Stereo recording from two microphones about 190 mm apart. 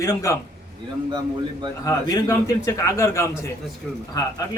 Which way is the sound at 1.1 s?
25° right (ahead or behind).